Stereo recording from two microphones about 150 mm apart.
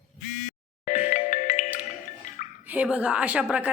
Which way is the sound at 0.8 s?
55° left (ahead or behind).